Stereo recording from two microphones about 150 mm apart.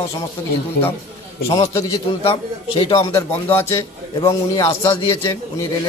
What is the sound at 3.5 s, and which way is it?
A man's voice, 15° left (ahead or behind).